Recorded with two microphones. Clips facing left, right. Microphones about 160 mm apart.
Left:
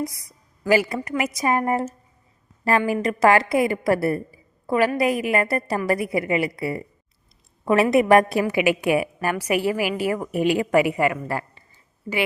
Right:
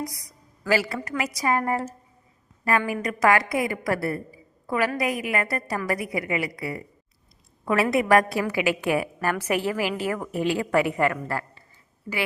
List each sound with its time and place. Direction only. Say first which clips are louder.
0.0 s a woman's voice: left 4 dB; 25° left (ahead or behind)